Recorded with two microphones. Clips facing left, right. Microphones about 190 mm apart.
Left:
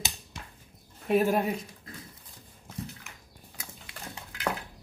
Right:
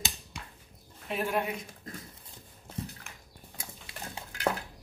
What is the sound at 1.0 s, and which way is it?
Speech, 45° left (ahead or behind).